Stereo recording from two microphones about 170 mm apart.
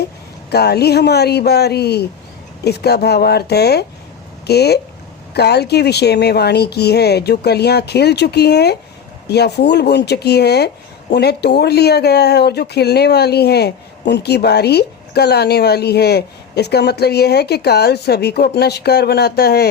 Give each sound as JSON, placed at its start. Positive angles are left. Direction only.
{"t": 0.5, "sound": "speech", "side_deg": 70}